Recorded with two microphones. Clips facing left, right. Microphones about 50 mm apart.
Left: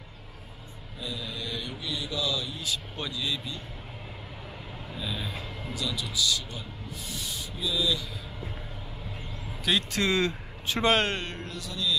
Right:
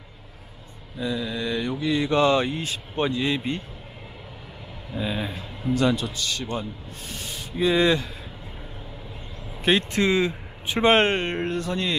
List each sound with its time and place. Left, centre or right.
1.0 s speech: right
4.9 s speech: right
9.7 s speech: right